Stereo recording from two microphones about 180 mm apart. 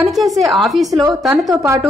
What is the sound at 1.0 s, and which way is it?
Speech, 15° right (ahead or behind).